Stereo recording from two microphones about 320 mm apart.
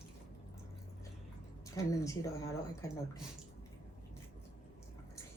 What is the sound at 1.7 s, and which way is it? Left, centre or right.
Speech, centre.